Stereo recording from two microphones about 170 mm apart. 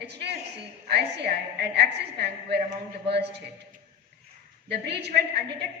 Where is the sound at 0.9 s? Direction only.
75° right (ahead or behind).